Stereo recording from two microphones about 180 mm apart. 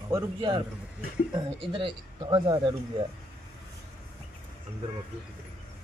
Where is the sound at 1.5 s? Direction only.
30° right (ahead or behind).